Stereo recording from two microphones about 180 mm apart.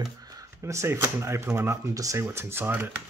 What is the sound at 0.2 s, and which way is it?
Speech, 20° right (ahead or behind).